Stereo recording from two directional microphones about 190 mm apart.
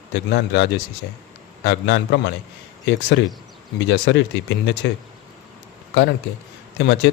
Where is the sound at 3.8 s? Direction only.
65° left (ahead or behind).